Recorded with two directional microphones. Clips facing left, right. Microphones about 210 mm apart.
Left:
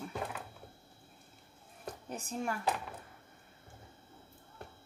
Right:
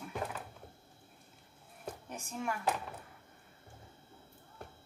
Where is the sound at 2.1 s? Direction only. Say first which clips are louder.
Left 3 dB; 35° left (ahead or behind).